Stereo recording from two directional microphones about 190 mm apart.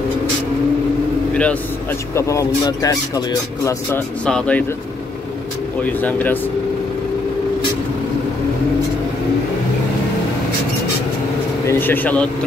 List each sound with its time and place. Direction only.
1.3 s vehicle: 5° left (ahead or behind)
2.1 s speech: 15° left (ahead or behind)
5.8 s speech: 10° left (ahead or behind)
11.6 s speech: 10° left (ahead or behind)